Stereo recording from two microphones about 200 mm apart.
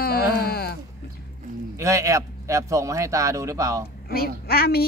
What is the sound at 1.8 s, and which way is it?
A man's voice, 15° right (ahead or behind).